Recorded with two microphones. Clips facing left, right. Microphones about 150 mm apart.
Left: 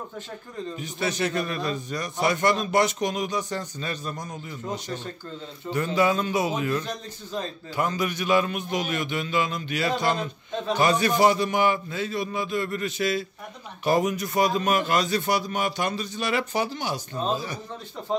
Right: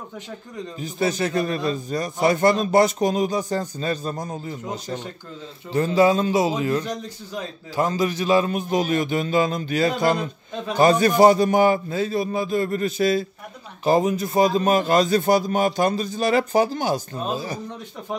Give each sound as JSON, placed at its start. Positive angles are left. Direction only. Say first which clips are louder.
{"t": 0.7, "sound": "a man's voice", "louder": "right 5 dB", "side_deg": -35}
{"t": 5.7, "sound": "a man's voice", "louder": "right 5 dB", "side_deg": -35}